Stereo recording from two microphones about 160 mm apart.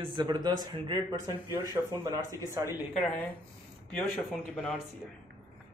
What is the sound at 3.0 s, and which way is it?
Speech, 10° left (ahead or behind).